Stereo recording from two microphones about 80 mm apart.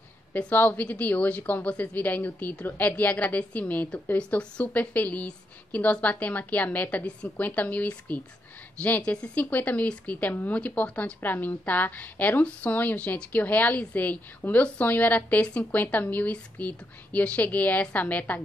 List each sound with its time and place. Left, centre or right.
0.3 s speech: left